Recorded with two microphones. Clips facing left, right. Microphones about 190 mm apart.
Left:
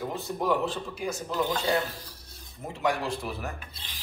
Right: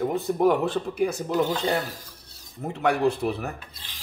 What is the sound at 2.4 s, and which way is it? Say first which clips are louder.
Speech: right 3 dB; 65° right (ahead or behind).